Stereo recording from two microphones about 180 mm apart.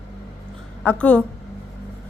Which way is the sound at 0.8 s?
10° left (ahead or behind).